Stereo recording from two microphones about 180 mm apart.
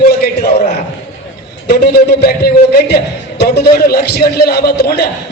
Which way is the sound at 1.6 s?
60° left (ahead or behind).